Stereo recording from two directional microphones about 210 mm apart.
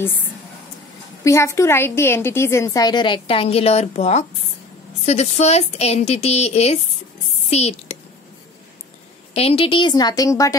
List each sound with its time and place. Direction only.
1.2 s a woman's voice: 15° left (ahead or behind); by 8.0 s 30° left (ahead or behind)
9.3 s a woman's voice: 30° left (ahead or behind)